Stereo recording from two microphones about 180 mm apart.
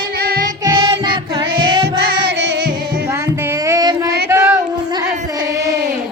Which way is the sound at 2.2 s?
75° right (ahead or behind).